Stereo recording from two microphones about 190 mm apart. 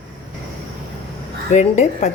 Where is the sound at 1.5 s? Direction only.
40° left (ahead or behind).